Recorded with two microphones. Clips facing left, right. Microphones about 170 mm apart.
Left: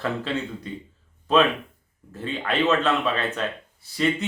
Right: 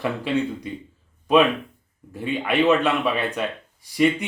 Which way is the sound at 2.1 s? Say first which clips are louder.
Right 4 dB; 15° right (ahead or behind).